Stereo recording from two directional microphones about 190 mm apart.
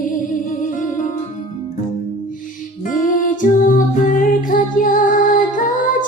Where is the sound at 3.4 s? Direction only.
45° left (ahead or behind).